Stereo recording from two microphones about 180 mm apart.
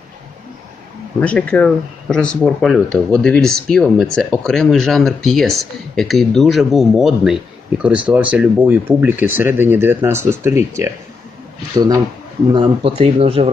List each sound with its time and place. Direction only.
1.2 s speech: 10° left (ahead or behind); by 10.9 s 15° right (ahead or behind)
12.5 s speech: 30° right (ahead or behind)